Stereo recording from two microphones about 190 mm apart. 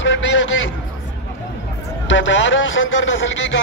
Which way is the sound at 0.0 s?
75° left (ahead or behind).